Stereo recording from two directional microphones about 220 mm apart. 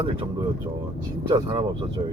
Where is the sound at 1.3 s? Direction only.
20° right (ahead or behind).